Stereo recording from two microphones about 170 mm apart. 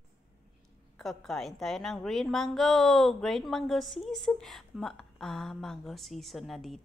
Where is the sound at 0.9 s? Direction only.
Centre (ahead or behind).